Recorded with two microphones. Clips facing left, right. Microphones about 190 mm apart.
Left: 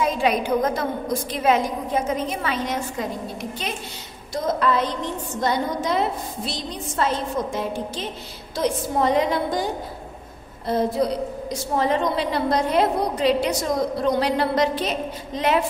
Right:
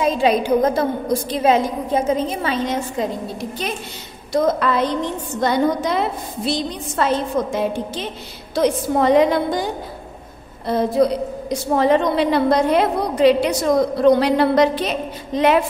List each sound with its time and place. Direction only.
0.0 s a woman's voice: 30° right (ahead or behind)
4.3 s a woman's voice: 70° right (ahead or behind)
11.7 s a woman's voice: 70° right (ahead or behind)